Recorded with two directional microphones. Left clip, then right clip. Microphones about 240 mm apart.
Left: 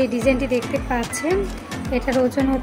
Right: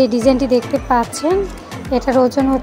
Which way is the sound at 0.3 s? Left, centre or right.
Centre.